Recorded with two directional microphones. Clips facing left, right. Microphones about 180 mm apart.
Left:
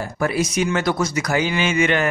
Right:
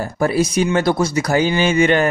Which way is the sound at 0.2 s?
30° right (ahead or behind).